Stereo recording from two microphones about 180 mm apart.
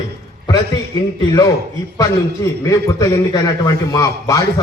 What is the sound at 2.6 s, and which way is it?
A man's voice, 15° left (ahead or behind).